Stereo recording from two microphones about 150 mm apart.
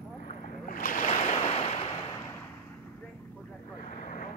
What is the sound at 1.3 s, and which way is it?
Waves, 40° left (ahead or behind).